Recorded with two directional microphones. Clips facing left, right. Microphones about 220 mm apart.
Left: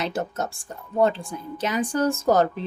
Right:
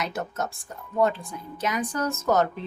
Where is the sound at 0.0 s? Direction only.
30° left (ahead or behind).